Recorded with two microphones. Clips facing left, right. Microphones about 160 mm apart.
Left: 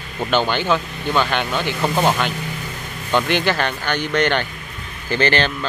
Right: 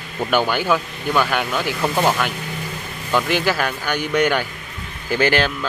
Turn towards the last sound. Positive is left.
turn(degrees=-5)  # may be behind; listen again after turning